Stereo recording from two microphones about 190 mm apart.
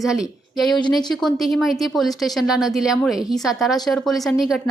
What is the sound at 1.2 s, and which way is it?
Speech, centre (ahead or behind).